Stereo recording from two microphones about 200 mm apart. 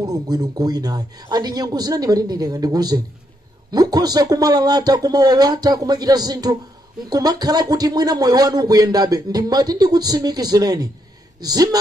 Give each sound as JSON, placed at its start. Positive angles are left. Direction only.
{"t": 0.0, "sound": "speech", "side_deg": -20}